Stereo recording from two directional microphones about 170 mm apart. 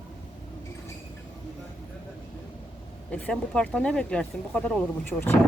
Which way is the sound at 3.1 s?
5° left (ahead or behind).